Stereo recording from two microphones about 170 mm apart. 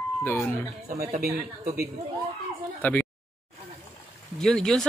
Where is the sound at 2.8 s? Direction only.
10° left (ahead or behind).